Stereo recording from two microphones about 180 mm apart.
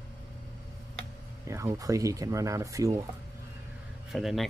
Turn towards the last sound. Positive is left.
turn(degrees=0)  # may be behind; listen again after turning